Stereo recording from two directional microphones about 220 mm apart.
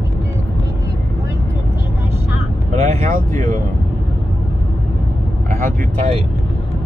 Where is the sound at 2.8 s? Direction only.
35° right (ahead or behind).